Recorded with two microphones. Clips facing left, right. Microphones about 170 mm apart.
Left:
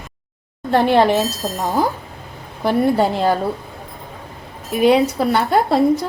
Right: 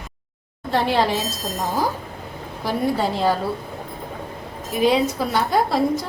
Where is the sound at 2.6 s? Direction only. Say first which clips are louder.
Left 6 dB; 60° left (ahead or behind).